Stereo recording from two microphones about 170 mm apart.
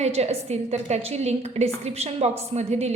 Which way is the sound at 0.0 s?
40° right (ahead or behind).